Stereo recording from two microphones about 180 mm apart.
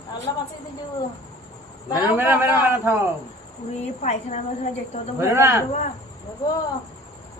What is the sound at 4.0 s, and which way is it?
A woman's voice, 40° left (ahead or behind).